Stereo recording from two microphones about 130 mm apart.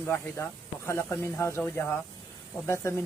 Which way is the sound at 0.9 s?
20° left (ahead or behind).